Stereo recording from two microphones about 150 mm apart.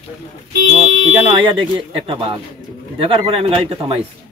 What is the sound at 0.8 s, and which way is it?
Speech, 35° right (ahead or behind).